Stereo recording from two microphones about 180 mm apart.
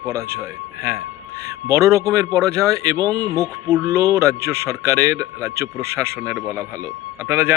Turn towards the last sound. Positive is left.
turn(degrees=-15)  # may be behind; listen again after turning